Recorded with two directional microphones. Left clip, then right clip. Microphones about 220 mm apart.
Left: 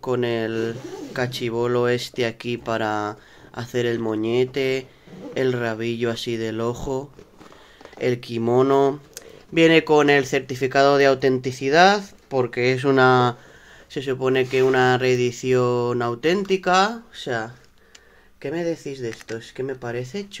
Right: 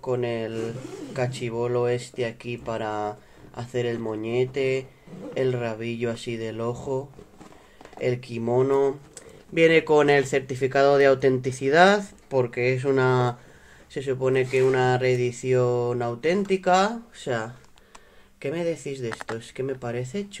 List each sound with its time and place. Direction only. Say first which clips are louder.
0.0 s speech: left 4 dB; 25° left (ahead or behind); by 20.3 s 10° left (ahead or behind)